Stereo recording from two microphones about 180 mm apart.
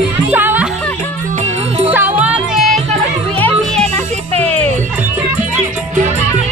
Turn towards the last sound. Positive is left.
turn(degrees=10)  # may be behind; listen again after turning